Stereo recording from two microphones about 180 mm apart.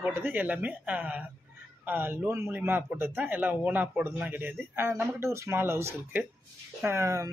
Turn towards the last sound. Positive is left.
turn(degrees=-15)  # may be behind; listen again after turning